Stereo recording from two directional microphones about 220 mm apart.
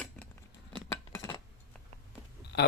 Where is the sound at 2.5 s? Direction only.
45° left (ahead or behind).